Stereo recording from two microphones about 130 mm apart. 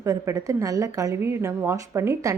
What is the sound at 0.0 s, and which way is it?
Speech, 25° right (ahead or behind).